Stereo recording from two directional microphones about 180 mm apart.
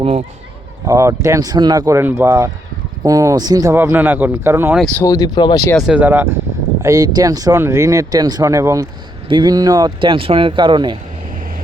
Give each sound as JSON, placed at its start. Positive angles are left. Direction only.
{"t": 0.0, "sound": "speech", "side_deg": -35}
{"t": 0.9, "sound": "speech", "side_deg": -15}
{"t": 4.9, "sound": "speech", "side_deg": 20}
{"t": 5.7, "sound": "speech", "side_deg": -5}